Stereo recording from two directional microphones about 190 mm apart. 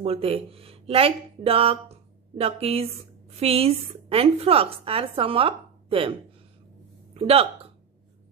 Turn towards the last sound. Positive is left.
turn(degrees=-30)  # may be behind; listen again after turning